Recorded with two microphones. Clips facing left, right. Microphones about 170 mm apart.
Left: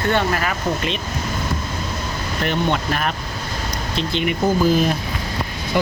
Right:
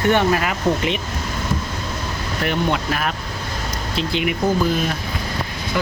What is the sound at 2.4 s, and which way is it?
Speech, 5° right (ahead or behind).